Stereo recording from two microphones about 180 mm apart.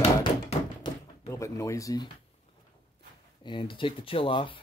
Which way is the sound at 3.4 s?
25° left (ahead or behind).